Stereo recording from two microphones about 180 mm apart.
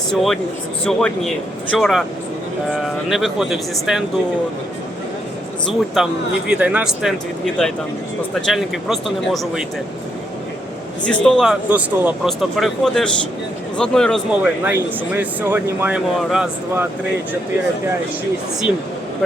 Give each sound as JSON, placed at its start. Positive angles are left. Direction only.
{"t": 0.1, "sound": "speech", "side_deg": 0}
{"t": 5.6, "sound": "speech", "side_deg": 0}
{"t": 11.0, "sound": "speech", "side_deg": 5}
{"t": 14.3, "sound": "speech", "side_deg": -10}